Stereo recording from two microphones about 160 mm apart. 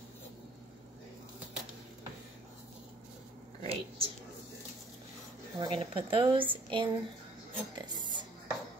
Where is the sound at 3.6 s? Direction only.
35° right (ahead or behind).